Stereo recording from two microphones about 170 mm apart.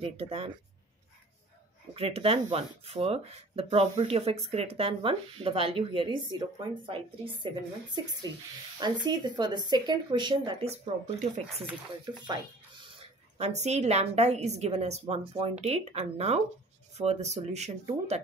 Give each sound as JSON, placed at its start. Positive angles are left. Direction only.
{"t": 0.0, "sound": "speech", "side_deg": -35}
{"t": 2.0, "sound": "speech", "side_deg": -35}
{"t": 12.9, "sound": "a woman's voice", "side_deg": -35}